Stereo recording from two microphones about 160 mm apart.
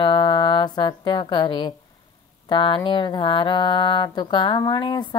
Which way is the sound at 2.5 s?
30° left (ahead or behind).